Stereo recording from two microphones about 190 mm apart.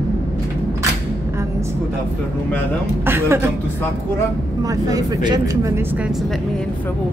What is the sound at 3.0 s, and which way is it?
Speech, 10° right (ahead or behind).